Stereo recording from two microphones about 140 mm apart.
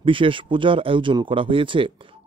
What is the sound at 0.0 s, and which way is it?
Speech, 40° right (ahead or behind).